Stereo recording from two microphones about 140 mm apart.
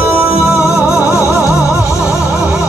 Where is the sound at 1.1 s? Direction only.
20° left (ahead or behind).